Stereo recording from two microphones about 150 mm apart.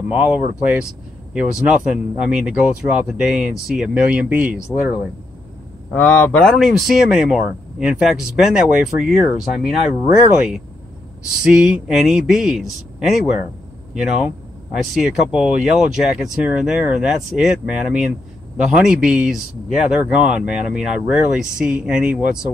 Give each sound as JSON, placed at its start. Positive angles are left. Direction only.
{"t": 0.1, "sound": "speech", "side_deg": -5}
{"t": 5.9, "sound": "speech", "side_deg": 10}
{"t": 11.4, "sound": "speech", "side_deg": -5}